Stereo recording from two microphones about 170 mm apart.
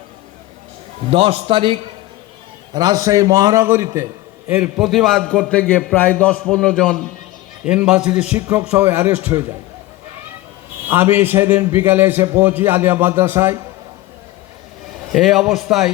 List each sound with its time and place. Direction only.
1.1 s a man's voice: 30° right (ahead or behind); by 9.4 s 10° right (ahead or behind)
10.8 s a man's voice: 10° right (ahead or behind)
15.1 s a man's voice: centre (ahead or behind)